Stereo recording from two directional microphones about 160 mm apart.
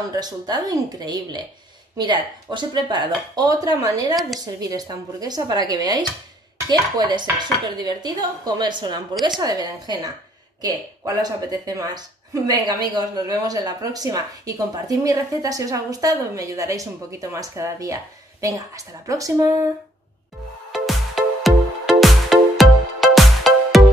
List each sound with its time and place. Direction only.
0.0 s speech: 25° right (ahead or behind)
20.7 s music: centre (ahead or behind)